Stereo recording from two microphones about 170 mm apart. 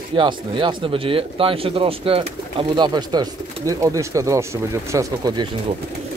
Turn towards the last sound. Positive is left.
turn(degrees=-25)  # may be behind; listen again after turning